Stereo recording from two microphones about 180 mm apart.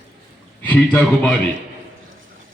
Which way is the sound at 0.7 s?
10° left (ahead or behind).